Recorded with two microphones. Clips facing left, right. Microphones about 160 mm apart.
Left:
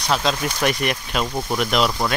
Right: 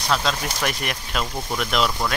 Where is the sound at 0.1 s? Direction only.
5° left (ahead or behind).